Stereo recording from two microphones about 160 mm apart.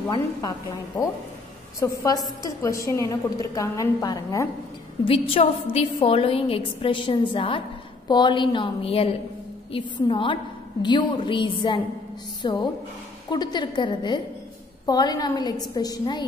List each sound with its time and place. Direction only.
0.1 s a woman's voice: 20° left (ahead or behind)
5.0 s a woman's voice: 35° left (ahead or behind)